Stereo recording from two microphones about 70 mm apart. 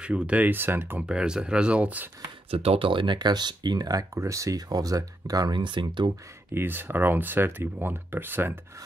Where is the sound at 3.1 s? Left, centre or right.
Right.